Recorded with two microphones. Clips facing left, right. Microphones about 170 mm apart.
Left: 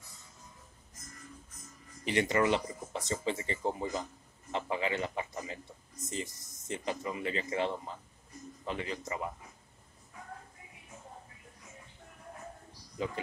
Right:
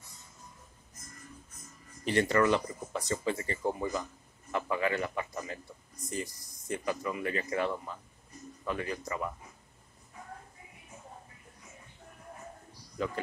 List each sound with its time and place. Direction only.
2.0 s speech: 20° left (ahead or behind)
13.0 s speech: 20° left (ahead or behind)